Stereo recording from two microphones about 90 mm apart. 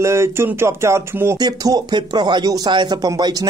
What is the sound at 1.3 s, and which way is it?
Speech, 45° right (ahead or behind).